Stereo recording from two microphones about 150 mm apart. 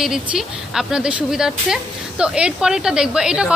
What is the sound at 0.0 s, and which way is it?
Speech, 5° right (ahead or behind).